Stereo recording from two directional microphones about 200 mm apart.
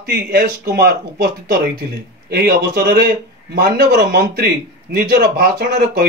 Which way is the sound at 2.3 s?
50° right (ahead or behind).